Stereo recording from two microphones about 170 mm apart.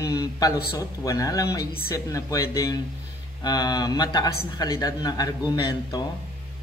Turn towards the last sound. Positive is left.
turn(degrees=25)  # may be behind; listen again after turning